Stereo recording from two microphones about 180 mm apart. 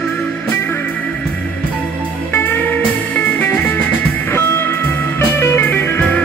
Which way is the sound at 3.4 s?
10° left (ahead or behind).